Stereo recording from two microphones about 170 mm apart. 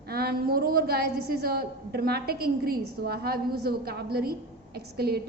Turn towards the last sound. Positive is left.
turn(degrees=-65)  # may be behind; listen again after turning